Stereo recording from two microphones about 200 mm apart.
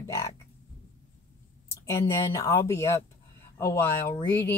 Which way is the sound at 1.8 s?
15° left (ahead or behind).